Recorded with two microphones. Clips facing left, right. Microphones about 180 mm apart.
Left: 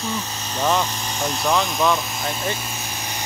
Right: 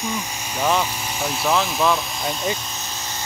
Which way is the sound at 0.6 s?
5° right (ahead or behind).